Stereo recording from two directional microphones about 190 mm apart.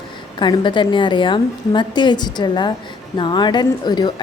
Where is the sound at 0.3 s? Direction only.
25° left (ahead or behind).